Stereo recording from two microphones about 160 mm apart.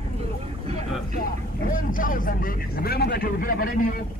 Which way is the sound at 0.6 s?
40° right (ahead or behind).